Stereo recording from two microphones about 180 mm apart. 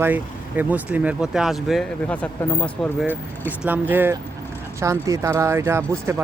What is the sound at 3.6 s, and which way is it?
Speech, 10° right (ahead or behind).